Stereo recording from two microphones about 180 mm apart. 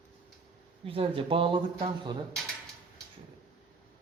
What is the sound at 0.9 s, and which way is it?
Speech, 30° right (ahead or behind).